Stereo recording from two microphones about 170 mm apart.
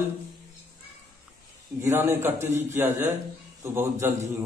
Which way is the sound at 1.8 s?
15° right (ahead or behind).